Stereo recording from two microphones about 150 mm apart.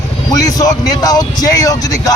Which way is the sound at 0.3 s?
25° left (ahead or behind).